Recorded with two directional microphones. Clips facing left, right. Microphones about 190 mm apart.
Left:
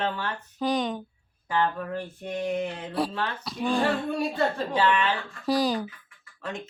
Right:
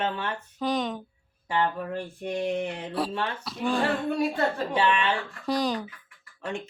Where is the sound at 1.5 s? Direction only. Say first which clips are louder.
Even; 25° right (ahead or behind).